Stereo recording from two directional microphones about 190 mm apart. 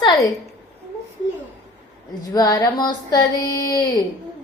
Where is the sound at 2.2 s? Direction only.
20° left (ahead or behind).